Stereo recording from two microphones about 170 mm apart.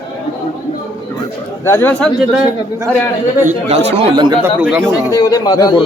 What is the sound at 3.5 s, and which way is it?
Speech, 40° right (ahead or behind).